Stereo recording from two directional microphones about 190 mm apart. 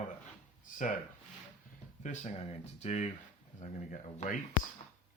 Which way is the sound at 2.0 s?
35° left (ahead or behind).